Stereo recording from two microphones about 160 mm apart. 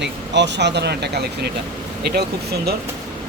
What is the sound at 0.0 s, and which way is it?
Speech, 90° right.